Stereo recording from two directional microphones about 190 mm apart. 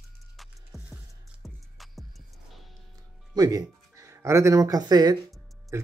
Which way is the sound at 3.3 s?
15° right (ahead or behind).